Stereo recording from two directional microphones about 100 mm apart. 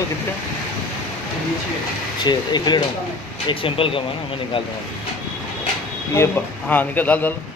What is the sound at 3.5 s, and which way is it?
Speech, 60° left (ahead or behind).